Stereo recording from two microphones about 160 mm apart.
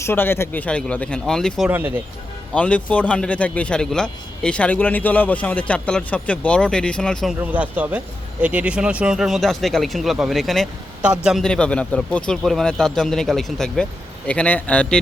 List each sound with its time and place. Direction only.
0.0 s a man's voice: 15° left (ahead or behind)
7.3 s a man's voice: 10° right (ahead or behind); by 14.9 s 10° left (ahead or behind)